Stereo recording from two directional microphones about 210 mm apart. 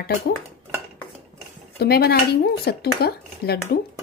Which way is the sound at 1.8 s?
45° left (ahead or behind).